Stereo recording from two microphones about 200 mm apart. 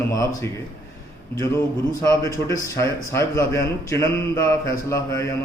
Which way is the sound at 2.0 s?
15° left (ahead or behind).